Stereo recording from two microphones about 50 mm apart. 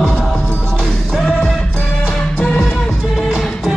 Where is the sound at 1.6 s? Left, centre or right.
Centre.